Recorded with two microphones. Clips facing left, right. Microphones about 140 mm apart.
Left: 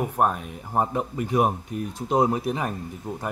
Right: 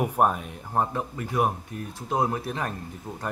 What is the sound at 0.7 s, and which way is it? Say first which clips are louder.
Speech: left 2 dB; 15° left (ahead or behind).